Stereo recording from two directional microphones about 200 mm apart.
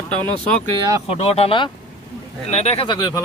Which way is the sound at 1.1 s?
30° left (ahead or behind).